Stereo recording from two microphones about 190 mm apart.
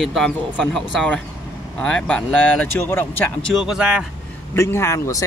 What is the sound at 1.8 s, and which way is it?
Speech, 5° left (ahead or behind).